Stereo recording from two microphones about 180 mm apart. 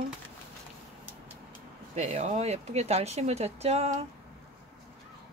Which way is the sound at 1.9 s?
40° right (ahead or behind).